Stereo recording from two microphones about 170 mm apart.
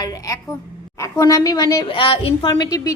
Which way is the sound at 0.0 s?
20° left (ahead or behind).